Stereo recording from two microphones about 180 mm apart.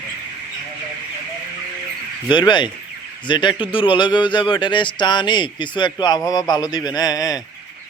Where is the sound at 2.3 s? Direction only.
25° left (ahead or behind).